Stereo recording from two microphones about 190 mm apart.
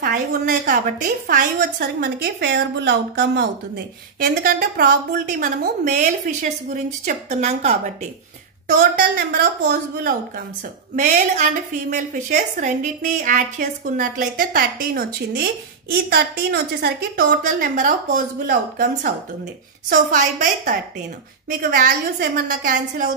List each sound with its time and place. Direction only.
0.0 s a woman's voice: 50° right (ahead or behind)
8.7 s a woman's voice: 50° right (ahead or behind)
11.0 s a woman's voice: 40° right (ahead or behind)